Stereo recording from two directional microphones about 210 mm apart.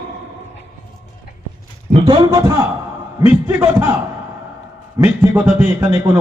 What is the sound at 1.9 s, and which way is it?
Speech, 20° right (ahead or behind).